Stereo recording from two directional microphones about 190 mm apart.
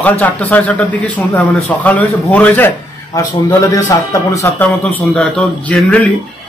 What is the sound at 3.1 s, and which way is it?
A man's voice, 20° left (ahead or behind).